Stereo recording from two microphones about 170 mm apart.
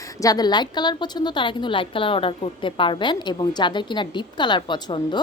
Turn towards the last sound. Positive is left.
turn(degrees=25)  # may be behind; listen again after turning